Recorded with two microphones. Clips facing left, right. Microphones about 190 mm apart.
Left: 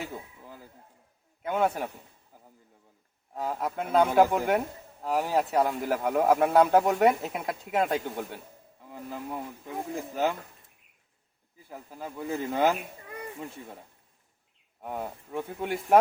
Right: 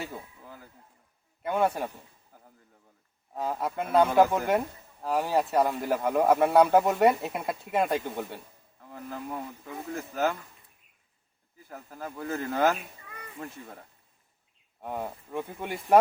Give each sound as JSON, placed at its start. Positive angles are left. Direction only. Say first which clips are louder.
{"t": 1.4, "sound": "speech", "louder": "even", "side_deg": 0}
{"t": 3.3, "sound": "speech", "louder": "right 1 dB", "side_deg": 0}
{"t": 11.7, "sound": "speech", "louder": "even", "side_deg": 5}
{"t": 13.1, "sound": "a sound", "louder": "left 6 dB", "side_deg": 45}
{"t": 13.4, "sound": "speech", "louder": "left 1 dB", "side_deg": 10}